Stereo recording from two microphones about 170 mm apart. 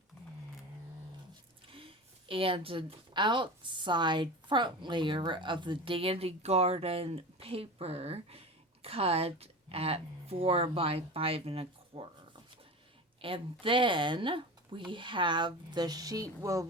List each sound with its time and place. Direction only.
1.7 s a woman's voice: 30° right (ahead or behind)
13.2 s speech: 30° right (ahead or behind)